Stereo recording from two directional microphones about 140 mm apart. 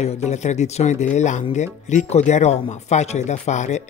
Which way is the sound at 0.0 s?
55° left (ahead or behind).